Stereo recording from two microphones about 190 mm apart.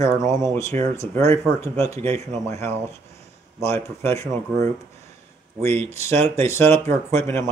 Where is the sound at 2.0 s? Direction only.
35° right (ahead or behind).